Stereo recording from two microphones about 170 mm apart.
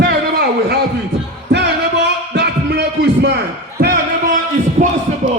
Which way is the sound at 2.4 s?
80° right.